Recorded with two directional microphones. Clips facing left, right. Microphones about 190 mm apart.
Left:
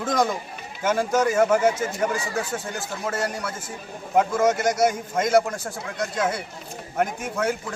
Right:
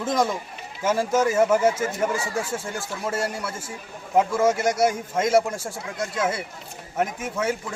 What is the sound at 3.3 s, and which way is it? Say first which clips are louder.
Speech: even; 10° right (ahead or behind).